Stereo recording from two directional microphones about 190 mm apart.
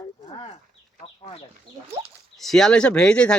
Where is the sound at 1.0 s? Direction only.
30° left (ahead or behind).